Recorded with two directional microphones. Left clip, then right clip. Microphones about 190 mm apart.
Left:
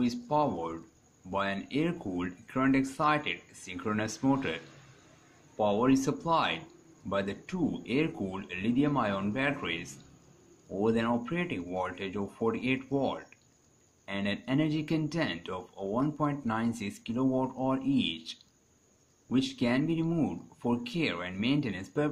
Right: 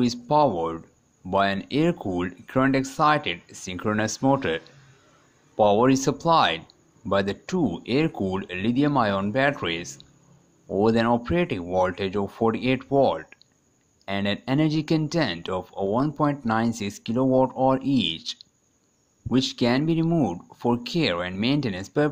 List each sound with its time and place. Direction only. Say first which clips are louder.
0.0 s speech: right 9 dB; 45° right (ahead or behind)